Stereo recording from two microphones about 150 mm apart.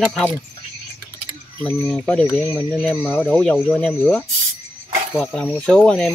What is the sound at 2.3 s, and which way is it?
Speech, centre (ahead or behind).